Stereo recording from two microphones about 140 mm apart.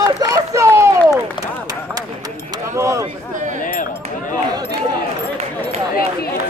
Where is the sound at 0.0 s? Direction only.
25° right (ahead or behind).